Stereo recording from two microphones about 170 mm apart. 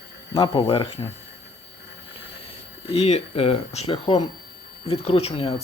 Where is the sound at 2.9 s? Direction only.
40° left (ahead or behind).